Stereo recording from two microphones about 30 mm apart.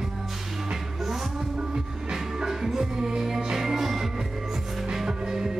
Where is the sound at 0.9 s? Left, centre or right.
Centre.